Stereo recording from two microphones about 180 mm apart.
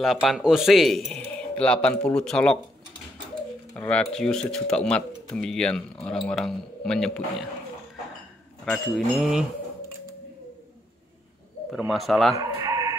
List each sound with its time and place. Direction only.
0.0 s speech: centre (ahead or behind)
3.7 s speech: 10° left (ahead or behind)
8.6 s speech: centre (ahead or behind)
11.9 s speech: centre (ahead or behind)
12.4 s bleat: 20° right (ahead or behind)